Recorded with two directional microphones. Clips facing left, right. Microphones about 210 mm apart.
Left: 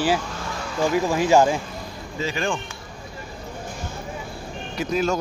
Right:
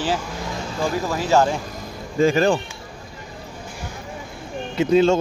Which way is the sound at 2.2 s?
45° right (ahead or behind).